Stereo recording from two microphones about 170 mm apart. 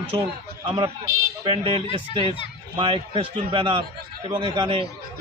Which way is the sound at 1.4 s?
30° right (ahead or behind).